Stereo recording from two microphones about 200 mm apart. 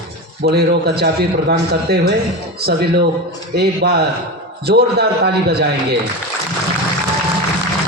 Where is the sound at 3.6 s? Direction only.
55° right (ahead or behind).